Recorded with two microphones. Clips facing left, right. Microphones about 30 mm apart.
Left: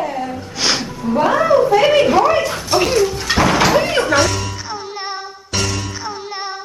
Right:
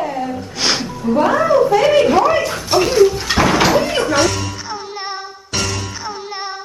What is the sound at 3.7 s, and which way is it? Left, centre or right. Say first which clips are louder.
Music: left 1 dB; centre.